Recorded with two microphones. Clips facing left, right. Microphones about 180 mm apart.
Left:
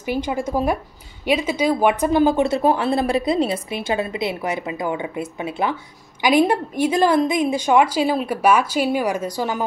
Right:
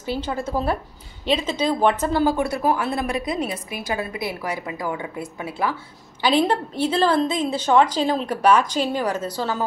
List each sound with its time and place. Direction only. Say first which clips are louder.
0.0 s a woman's voice: left 3 dB; 15° left (ahead or behind)